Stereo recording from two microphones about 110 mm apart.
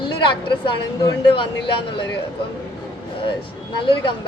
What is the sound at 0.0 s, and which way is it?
A woman's voice, 45° left (ahead or behind).